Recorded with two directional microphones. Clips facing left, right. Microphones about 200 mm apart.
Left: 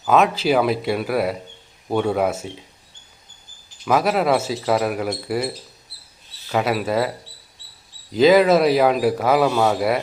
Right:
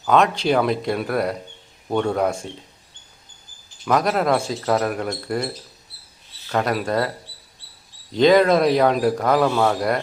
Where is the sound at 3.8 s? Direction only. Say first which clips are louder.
Left 1 dB; 5° left (ahead or behind).